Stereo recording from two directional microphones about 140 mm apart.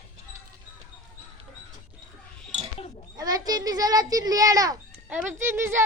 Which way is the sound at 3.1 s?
25° right (ahead or behind).